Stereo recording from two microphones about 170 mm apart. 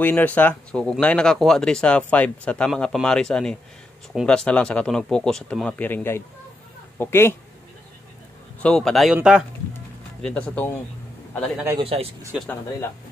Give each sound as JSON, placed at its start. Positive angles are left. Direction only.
{"t": 0.0, "sound": "speech", "side_deg": 10}
{"t": 8.5, "sound": "speech", "side_deg": 5}
{"t": 10.2, "sound": "speech", "side_deg": 5}
{"t": 11.8, "sound": "speech", "side_deg": -35}